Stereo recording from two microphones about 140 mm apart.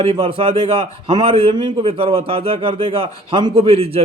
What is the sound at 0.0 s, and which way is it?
A man's voice, 45° right (ahead or behind).